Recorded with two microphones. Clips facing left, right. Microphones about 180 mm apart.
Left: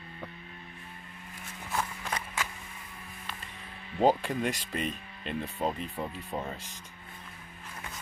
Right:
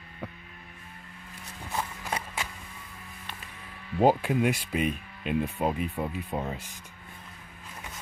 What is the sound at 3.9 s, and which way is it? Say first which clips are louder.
Speech: right 3 dB; 10° right (ahead or behind).